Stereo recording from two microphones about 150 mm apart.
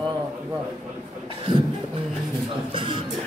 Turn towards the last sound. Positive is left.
turn(degrees=-35)  # may be behind; listen again after turning